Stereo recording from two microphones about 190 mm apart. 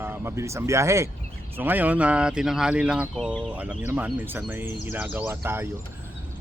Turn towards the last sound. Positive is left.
turn(degrees=-10)  # may be behind; listen again after turning